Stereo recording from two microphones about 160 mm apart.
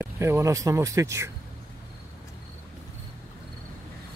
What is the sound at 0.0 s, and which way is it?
Speech, 15° right (ahead or behind).